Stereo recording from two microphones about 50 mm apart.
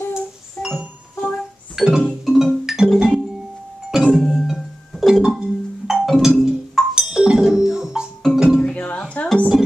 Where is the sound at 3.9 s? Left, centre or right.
Centre.